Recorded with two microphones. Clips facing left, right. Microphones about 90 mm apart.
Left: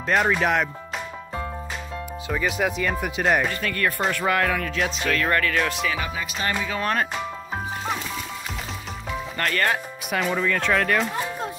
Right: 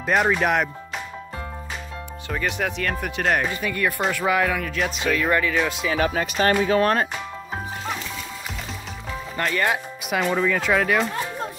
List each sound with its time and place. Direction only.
0.0 s speech: 5° right (ahead or behind)
2.2 s speech: 5° left (ahead or behind)
3.4 s speech: 10° right (ahead or behind)
5.9 s speech: 50° right (ahead or behind)
6.6 s speech: 40° right (ahead or behind)
9.4 s speech: 10° right (ahead or behind)